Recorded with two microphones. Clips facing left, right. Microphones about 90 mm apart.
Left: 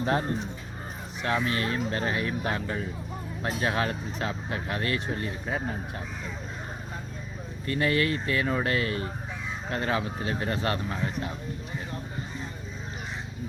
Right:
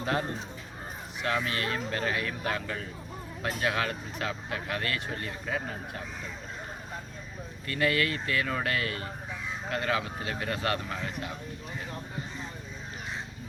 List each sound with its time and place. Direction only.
0.0 s speech: 30° left (ahead or behind)
7.7 s speech: 30° left (ahead or behind)